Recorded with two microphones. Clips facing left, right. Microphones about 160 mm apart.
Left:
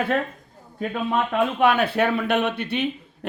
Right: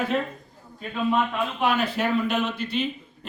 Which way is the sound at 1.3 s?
60° left (ahead or behind).